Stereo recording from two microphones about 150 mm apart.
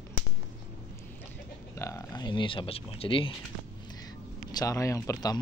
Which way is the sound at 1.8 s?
25° left (ahead or behind).